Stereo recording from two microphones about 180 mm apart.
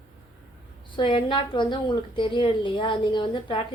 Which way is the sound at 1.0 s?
30° left (ahead or behind).